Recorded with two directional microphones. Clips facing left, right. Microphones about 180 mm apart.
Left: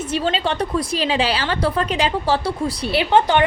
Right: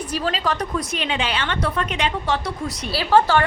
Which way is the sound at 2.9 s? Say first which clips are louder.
Left 1 dB; 20° left (ahead or behind).